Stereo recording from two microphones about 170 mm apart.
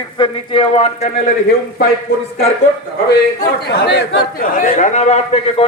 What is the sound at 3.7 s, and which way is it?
Speech, 75° left (ahead or behind).